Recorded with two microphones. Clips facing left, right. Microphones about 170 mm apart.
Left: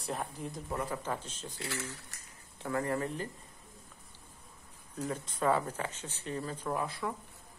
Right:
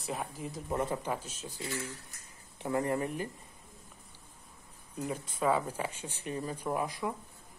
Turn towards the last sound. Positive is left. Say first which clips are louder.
# right 1 dB
turn(degrees=-15)  # may be behind; listen again after turning